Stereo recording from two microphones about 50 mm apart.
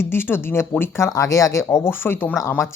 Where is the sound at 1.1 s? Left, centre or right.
Left.